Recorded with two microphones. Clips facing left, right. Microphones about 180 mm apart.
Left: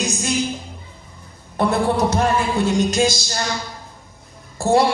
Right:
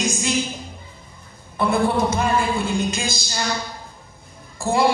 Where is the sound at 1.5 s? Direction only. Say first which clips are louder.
Left 1 dB; 75° left (ahead or behind).